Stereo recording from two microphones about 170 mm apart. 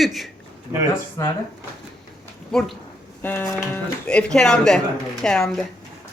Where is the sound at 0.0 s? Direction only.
Centre (ahead or behind).